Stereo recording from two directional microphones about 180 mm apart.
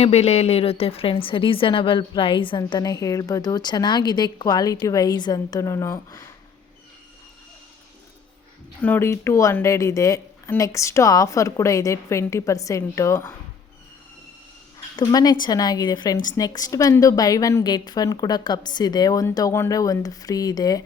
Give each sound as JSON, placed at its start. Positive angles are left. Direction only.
{"t": 0.0, "sound": "a woman's voice", "side_deg": 35}
{"t": 8.8, "sound": "speech", "side_deg": 10}
{"t": 14.9, "sound": "a woman's voice", "side_deg": 20}